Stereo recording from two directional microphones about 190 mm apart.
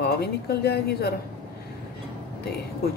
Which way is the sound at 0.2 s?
60° left (ahead or behind).